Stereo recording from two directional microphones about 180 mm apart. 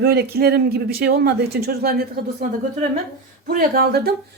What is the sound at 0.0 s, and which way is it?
Speech, 60° right (ahead or behind).